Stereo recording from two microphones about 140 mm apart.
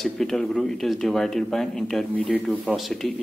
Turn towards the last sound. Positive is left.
turn(degrees=0)  # may be behind; listen again after turning